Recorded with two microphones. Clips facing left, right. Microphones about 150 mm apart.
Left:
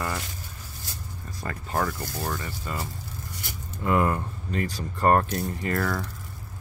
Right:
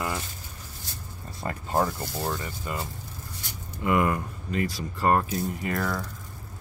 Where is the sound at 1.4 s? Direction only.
20° right (ahead or behind).